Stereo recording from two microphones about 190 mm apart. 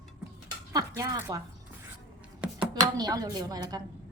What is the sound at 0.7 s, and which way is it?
Speech, 20° right (ahead or behind).